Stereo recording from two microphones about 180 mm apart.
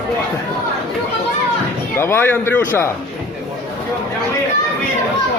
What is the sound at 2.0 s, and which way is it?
Speech, 15° left (ahead or behind).